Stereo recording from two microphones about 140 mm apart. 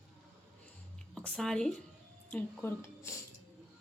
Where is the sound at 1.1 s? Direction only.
5° left (ahead or behind).